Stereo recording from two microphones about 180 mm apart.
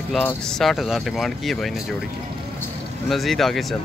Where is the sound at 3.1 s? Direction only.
Centre (ahead or behind).